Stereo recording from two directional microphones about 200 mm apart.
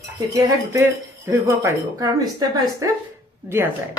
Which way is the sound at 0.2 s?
15° right (ahead or behind).